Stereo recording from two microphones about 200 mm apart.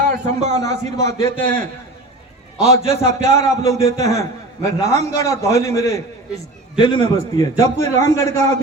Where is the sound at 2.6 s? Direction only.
35° right (ahead or behind).